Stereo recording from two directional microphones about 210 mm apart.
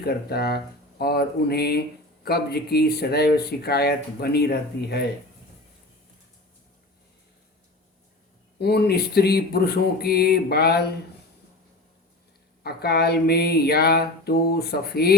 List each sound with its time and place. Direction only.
0.0 s speech: 50° left (ahead or behind)
8.5 s speech: 50° left (ahead or behind)
12.6 s speech: 50° left (ahead or behind)